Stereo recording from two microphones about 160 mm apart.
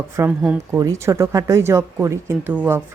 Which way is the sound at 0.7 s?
20° right (ahead or behind).